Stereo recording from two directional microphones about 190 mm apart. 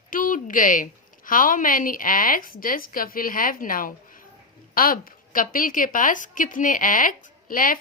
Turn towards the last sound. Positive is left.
turn(degrees=45)  # may be behind; listen again after turning